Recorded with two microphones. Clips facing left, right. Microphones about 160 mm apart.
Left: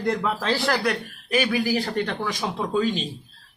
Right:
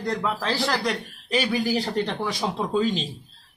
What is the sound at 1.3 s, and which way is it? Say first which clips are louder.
Speech: left 1 dB; 5° left (ahead or behind).